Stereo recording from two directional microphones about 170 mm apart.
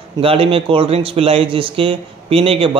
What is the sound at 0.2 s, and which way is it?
Speech, 35° right (ahead or behind).